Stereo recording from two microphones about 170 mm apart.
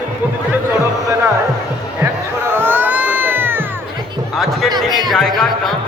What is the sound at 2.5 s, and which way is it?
Music, 10° right (ahead or behind).